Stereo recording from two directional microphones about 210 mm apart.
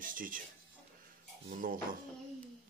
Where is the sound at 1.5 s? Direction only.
40° right (ahead or behind).